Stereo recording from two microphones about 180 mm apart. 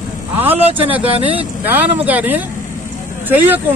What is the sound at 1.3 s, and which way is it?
Speech, 10° right (ahead or behind).